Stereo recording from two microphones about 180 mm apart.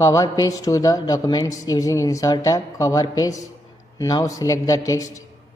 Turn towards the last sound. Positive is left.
turn(degrees=20)  # may be behind; listen again after turning